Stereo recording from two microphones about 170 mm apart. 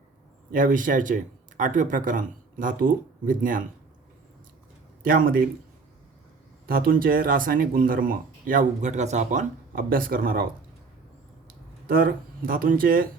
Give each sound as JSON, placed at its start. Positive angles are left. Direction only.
{"t": 0.5, "sound": "speech", "side_deg": -50}
{"t": 5.0, "sound": "speech", "side_deg": -55}
{"t": 6.7, "sound": "speech", "side_deg": -60}
{"t": 11.4, "sound": "speech", "side_deg": -55}